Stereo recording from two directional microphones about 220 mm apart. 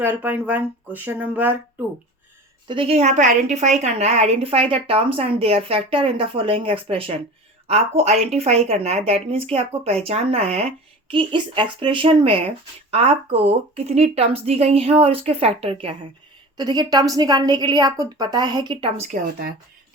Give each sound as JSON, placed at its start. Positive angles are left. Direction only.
{"t": 0.0, "sound": "speech", "side_deg": -10}
{"t": 2.6, "sound": "a woman's voice", "side_deg": -25}